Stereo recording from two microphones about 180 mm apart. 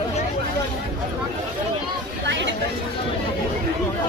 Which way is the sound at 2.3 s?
85° right.